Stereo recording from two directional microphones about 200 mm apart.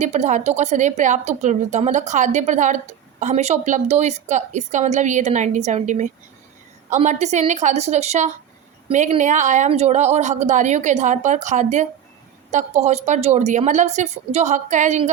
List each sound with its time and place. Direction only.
0.0 s a woman's voice: 35° right (ahead or behind)